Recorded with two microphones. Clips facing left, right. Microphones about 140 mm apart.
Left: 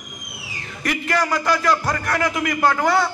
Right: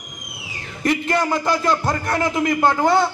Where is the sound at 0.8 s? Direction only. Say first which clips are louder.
Right 3 dB; 25° right (ahead or behind).